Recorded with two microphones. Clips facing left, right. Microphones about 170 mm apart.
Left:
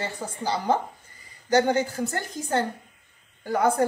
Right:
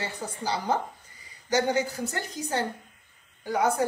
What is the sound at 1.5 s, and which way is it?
A woman's voice, 50° left (ahead or behind).